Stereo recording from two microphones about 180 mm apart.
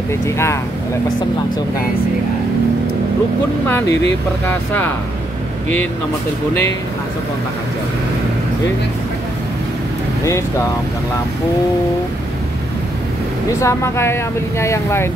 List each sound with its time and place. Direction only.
13.6 s speech: 15° left (ahead or behind)